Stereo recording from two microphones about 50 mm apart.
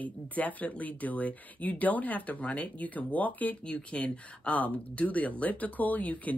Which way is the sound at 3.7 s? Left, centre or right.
Left.